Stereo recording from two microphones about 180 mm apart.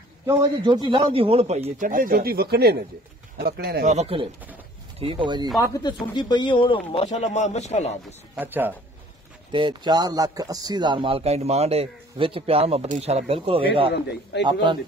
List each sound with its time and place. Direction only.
0.3 s a man's voice: 20° right (ahead or behind); by 3.8 s 60° right (ahead or behind)
3.8 s a man's voice: 35° right (ahead or behind)
5.6 s speech: 20° left (ahead or behind); by 8.0 s 40° left (ahead or behind)
8.4 s speech: 10° right (ahead or behind)
9.5 s a man's voice: 25° right (ahead or behind)